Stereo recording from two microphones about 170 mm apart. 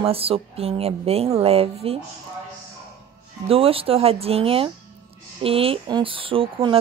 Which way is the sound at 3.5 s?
35° right (ahead or behind).